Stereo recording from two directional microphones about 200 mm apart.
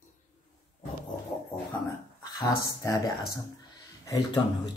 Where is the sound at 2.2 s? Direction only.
15° left (ahead or behind).